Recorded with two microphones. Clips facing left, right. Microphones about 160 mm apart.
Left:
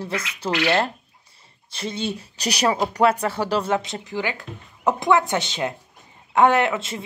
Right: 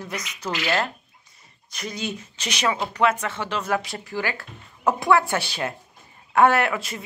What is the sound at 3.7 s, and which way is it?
Speech, 20° left (ahead or behind).